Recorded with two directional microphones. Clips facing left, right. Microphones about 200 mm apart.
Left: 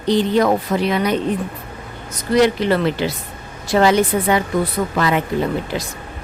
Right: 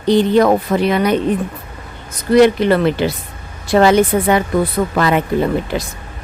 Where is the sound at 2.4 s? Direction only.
55° right (ahead or behind).